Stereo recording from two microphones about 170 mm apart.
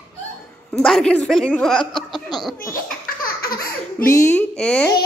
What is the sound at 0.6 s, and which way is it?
A woman's voice, 5° left (ahead or behind).